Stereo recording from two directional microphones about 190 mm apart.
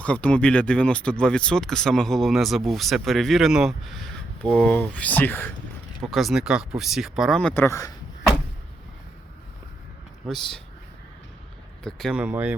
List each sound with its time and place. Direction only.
0.0 s speech: 5° left (ahead or behind)
10.2 s speech: centre (ahead or behind)
11.8 s speech: 5° left (ahead or behind)